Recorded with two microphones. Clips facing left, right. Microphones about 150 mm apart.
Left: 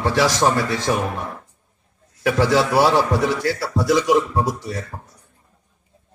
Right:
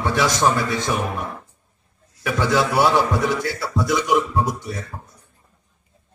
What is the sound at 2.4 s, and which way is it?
A man's voice, 30° left (ahead or behind).